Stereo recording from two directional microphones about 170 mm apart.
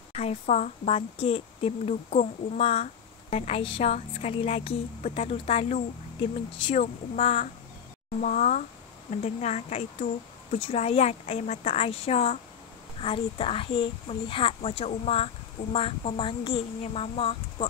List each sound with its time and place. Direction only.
0.1 s a woman's voice: 40° left (ahead or behind)